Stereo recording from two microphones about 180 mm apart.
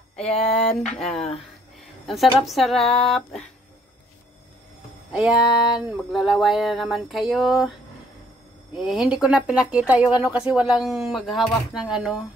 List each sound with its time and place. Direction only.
0.7 s speech: 5° left (ahead or behind)
5.1 s speech: 5° right (ahead or behind)
8.7 s speech: centre (ahead or behind)